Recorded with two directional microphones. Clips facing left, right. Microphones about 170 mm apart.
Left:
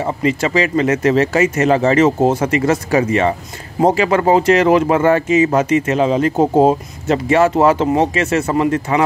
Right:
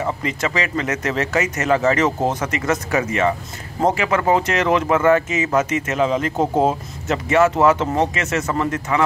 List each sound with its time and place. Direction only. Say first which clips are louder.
0.0 s speech: left 5 dB; 25° left (ahead or behind)
7.5 s speech: left 4 dB; 20° left (ahead or behind)
8.2 s speech: left 6 dB; 30° left (ahead or behind)